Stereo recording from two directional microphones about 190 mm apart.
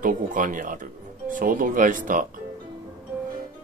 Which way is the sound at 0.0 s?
45° right (ahead or behind).